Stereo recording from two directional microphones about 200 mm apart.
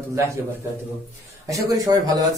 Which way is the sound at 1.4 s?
15° right (ahead or behind).